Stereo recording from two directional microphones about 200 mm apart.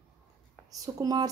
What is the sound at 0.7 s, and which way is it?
Speech, 15° right (ahead or behind).